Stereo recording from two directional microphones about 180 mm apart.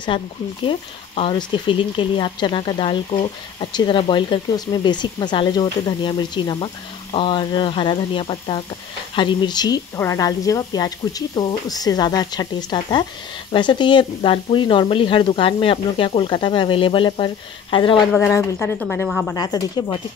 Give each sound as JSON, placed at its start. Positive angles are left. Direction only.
{"t": 0.1, "sound": "speech", "side_deg": 30}
{"t": 18.1, "sound": "a woman's voice", "side_deg": 10}
{"t": 19.3, "sound": "speech", "side_deg": 20}